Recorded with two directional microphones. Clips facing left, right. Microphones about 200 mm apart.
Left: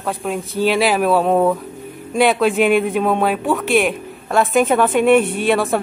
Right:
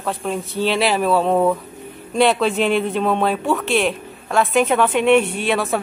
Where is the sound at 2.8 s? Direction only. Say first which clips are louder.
Left 2 dB; 5° left (ahead or behind).